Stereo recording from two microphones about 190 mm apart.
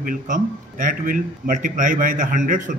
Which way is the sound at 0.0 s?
45° right (ahead or behind).